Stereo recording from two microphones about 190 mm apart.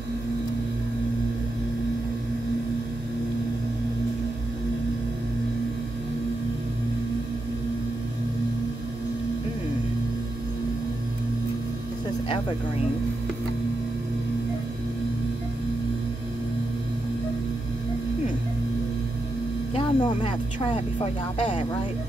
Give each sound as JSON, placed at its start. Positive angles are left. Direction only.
{"t": 19.7, "sound": "speech", "side_deg": 25}